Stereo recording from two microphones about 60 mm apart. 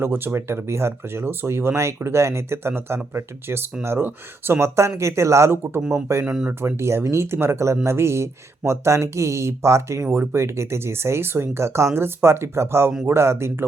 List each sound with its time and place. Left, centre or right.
0.0 s speech: right
4.0 s speech: right
4.9 s speech: right
6.2 s speech: centre
6.6 s speech: right